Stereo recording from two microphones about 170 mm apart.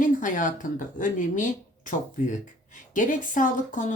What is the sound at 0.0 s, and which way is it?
Speech, 50° left (ahead or behind).